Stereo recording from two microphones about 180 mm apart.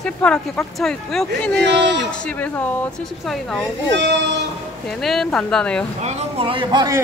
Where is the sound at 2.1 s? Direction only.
5° left (ahead or behind).